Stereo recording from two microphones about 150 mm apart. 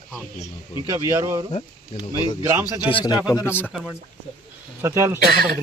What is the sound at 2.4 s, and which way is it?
Speech, 20° right (ahead or behind).